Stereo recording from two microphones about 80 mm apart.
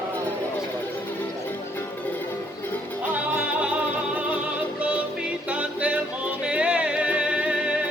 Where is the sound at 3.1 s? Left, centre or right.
Centre.